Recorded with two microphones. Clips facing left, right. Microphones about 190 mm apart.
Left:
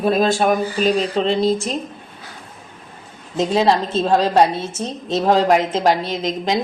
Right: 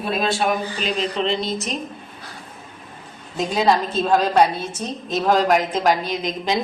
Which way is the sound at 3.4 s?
25° left (ahead or behind).